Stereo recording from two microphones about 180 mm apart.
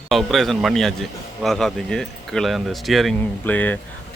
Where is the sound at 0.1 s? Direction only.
Centre (ahead or behind).